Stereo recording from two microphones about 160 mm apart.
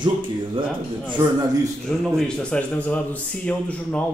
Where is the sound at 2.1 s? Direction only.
5° left (ahead or behind).